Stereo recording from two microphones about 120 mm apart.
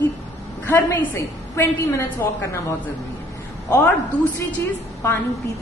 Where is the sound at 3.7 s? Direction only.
10° left (ahead or behind).